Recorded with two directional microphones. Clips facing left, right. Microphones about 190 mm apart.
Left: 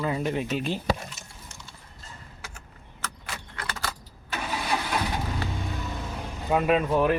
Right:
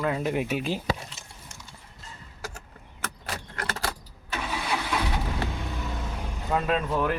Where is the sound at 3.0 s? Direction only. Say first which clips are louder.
Right 3 dB; 40° right (ahead or behind).